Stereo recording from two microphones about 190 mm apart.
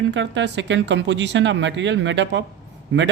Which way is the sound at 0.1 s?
70° right (ahead or behind).